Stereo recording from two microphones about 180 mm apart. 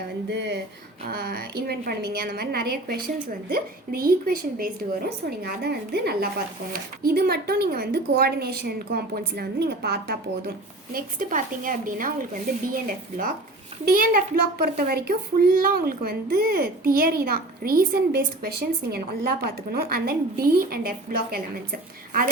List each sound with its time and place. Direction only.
0.3 s speech: 75° right (ahead or behind)
1.0 s a woman's voice: 60° right (ahead or behind)
10.9 s a woman's voice: 45° right (ahead or behind)